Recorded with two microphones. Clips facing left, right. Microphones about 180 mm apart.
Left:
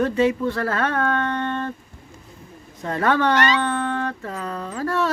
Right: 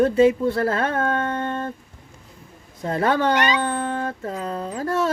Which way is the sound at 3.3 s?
15° right (ahead or behind).